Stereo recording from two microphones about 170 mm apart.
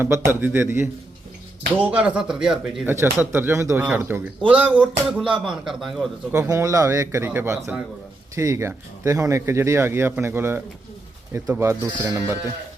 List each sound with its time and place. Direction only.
0.0 s speech: 15° right (ahead or behind)
2.9 s speech: 15° right (ahead or behind)
6.3 s speech: 15° right (ahead or behind)